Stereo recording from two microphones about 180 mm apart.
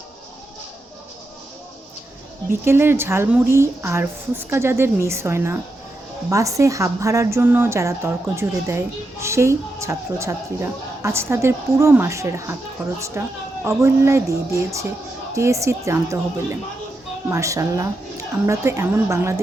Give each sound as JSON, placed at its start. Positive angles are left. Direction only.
{"t": 2.5, "sound": "speech", "side_deg": -15}